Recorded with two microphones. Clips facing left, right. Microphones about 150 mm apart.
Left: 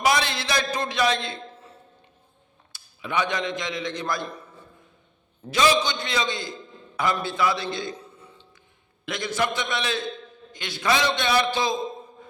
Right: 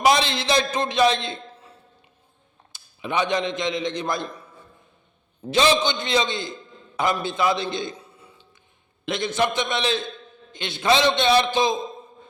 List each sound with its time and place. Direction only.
0.0 s a man's voice: 20° right (ahead or behind)
2.7 s a man's voice: 20° right (ahead or behind)
5.5 s a man's voice: 25° right (ahead or behind)
7.9 s burping: 10° right (ahead or behind)
9.0 s a man's voice: 25° right (ahead or behind)